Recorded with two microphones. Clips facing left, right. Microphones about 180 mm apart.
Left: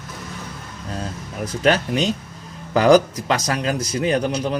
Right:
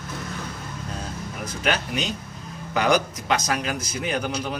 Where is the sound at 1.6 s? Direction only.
35° left (ahead or behind).